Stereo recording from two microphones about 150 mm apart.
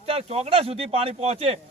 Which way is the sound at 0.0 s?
40° right (ahead or behind).